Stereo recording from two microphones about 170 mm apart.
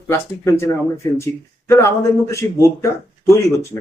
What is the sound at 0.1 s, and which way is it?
Speech, 15° left (ahead or behind).